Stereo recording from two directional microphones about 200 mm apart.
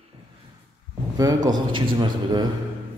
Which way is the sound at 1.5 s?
20° right (ahead or behind).